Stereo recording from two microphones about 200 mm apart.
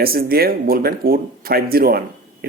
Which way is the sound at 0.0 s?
50° right (ahead or behind).